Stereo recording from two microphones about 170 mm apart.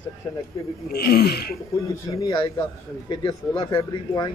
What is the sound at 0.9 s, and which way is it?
Speech, 65° left (ahead or behind).